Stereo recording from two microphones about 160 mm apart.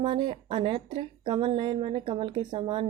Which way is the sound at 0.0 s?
30° right (ahead or behind).